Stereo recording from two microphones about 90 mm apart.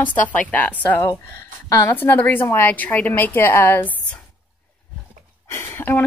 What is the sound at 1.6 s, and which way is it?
Speech, 35° left (ahead or behind).